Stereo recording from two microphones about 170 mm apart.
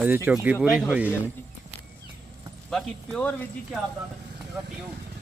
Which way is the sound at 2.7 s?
5° left (ahead or behind).